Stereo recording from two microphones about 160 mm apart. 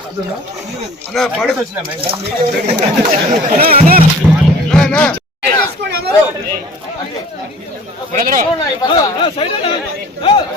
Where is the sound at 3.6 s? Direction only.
70° right (ahead or behind).